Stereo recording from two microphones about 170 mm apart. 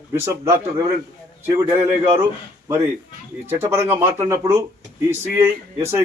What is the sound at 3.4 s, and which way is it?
Speech, 15° right (ahead or behind).